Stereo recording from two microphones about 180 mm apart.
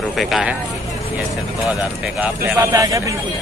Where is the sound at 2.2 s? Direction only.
10° right (ahead or behind).